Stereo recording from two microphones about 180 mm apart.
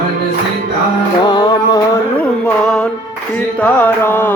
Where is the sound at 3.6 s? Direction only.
10° left (ahead or behind).